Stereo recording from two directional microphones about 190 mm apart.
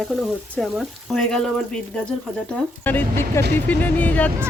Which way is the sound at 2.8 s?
10° left (ahead or behind).